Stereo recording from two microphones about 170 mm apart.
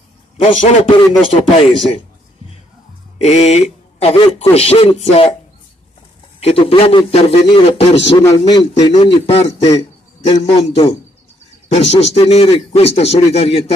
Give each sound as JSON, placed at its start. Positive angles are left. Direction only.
{"t": 0.4, "sound": "a man's voice", "side_deg": 35}
{"t": 3.2, "sound": "a man's voice", "side_deg": 40}
{"t": 6.4, "sound": "a man's voice", "side_deg": 35}
{"t": 8.2, "sound": "speech", "side_deg": 20}
{"t": 8.9, "sound": "a man's voice", "side_deg": 35}